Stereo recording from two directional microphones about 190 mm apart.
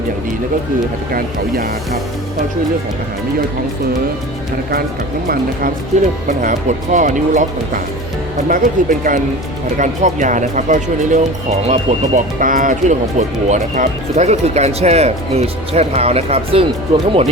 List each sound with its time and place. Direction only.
1.1 s speech: 50° right (ahead or behind)
6.4 s speech: 45° right (ahead or behind)
8.4 s speech: 45° right (ahead or behind)